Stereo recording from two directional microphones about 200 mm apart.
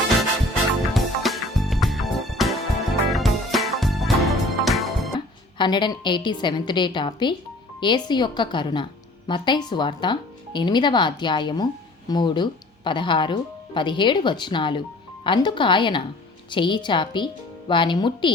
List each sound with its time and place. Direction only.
0.9 s music: centre (ahead or behind)
5.5 s a woman's voice: 25° left (ahead or behind)